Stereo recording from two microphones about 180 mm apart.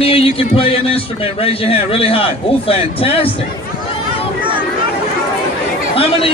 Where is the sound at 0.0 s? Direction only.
30° left (ahead or behind).